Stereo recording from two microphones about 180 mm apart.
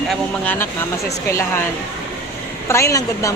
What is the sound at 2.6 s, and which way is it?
Speech, 15° left (ahead or behind).